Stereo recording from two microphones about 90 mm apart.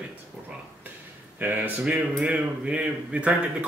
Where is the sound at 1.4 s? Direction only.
20° right (ahead or behind).